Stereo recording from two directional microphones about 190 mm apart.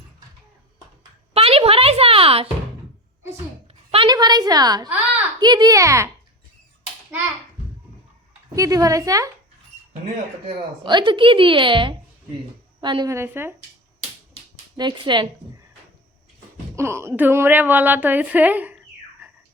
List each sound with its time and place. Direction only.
1.3 s a sound: 30° right (ahead or behind)
3.9 s a woman's voice: 25° right (ahead or behind)
8.5 s a woman's voice: 15° right (ahead or behind)
10.8 s a woman's voice: 25° right (ahead or behind)
14.8 s a woman's voice: 25° right (ahead or behind)
16.7 s a woman's voice: 15° right (ahead or behind)